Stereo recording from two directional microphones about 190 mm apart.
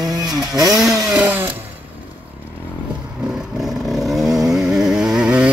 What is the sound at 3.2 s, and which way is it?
Vehicle, centre (ahead or behind).